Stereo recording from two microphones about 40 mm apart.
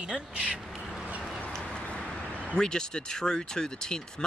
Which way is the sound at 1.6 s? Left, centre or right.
Left.